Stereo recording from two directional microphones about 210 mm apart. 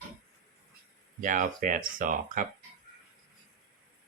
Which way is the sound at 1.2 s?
35° right (ahead or behind).